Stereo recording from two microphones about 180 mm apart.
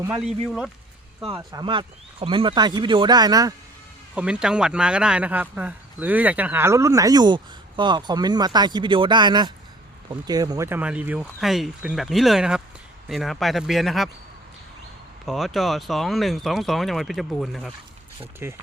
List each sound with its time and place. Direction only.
0.2 s speech: 5° right (ahead or behind)
1.3 s speech: 20° right (ahead or behind)
4.1 s speech: 5° right (ahead or behind)
15.3 s speech: centre (ahead or behind)
18.2 s speech: 15° right (ahead or behind)